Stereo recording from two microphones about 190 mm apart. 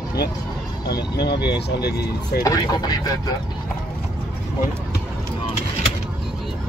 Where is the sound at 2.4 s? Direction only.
20° left (ahead or behind).